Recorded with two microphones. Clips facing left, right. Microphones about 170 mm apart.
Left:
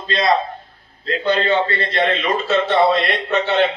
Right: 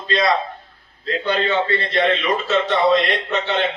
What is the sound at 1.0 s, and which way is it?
A man's voice, 40° left (ahead or behind).